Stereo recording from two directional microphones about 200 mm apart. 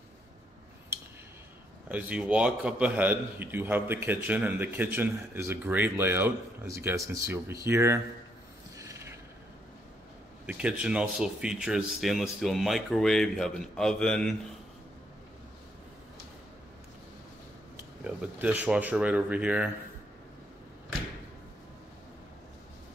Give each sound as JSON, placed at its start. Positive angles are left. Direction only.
{"t": 1.9, "sound": "a man's voice", "side_deg": -5}
{"t": 8.7, "sound": "mechanisms", "side_deg": -15}
{"t": 10.4, "sound": "speech", "side_deg": -5}
{"t": 18.0, "sound": "a man's voice", "side_deg": -5}